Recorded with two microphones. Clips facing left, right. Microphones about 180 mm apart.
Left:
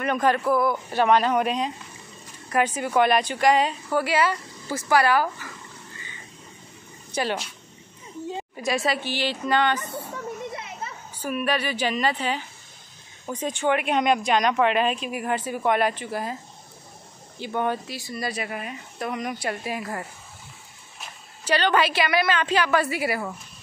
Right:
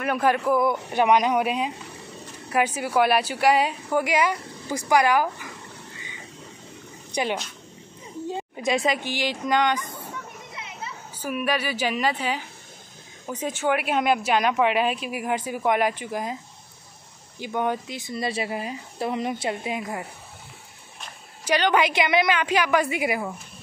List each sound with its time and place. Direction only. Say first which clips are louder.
0.0 s a woman's voice: even; 10° right (ahead or behind)
7.1 s a sound: even; 15° right (ahead or behind)
8.5 s a woman's voice: right 1 dB; 20° right (ahead or behind)
11.1 s a woman's voice: even; 10° right (ahead or behind)
17.6 s speech: even; 15° right (ahead or behind)
21.5 s a woman's voice: even; 15° right (ahead or behind)